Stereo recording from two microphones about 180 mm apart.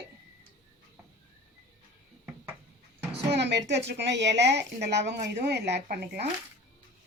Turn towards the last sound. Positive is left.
turn(degrees=-65)  # may be behind; listen again after turning